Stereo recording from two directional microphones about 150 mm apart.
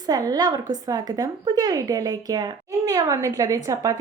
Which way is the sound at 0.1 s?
25° right (ahead or behind).